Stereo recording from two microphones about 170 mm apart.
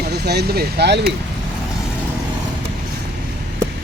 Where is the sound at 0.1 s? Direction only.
75° right (ahead or behind).